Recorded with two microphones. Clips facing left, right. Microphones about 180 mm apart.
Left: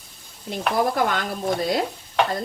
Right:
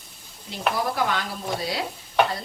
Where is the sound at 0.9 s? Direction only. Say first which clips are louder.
Left 3 dB; 50° left (ahead or behind).